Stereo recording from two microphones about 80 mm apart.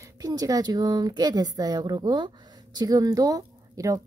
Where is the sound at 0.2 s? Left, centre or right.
Right.